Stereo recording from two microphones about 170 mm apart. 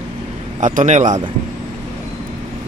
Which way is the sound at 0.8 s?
45° right (ahead or behind).